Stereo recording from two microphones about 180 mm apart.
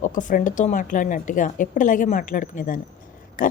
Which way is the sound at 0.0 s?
45° left (ahead or behind).